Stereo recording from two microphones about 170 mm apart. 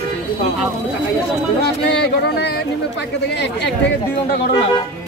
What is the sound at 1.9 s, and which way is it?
Speech, 85° left.